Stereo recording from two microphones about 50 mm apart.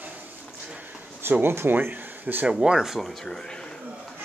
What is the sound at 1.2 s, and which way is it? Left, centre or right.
Speech, right.